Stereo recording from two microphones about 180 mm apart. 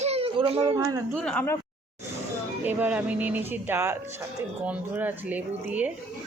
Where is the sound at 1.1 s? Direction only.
5° left (ahead or behind).